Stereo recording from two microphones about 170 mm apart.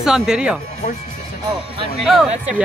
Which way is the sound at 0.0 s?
5° right (ahead or behind).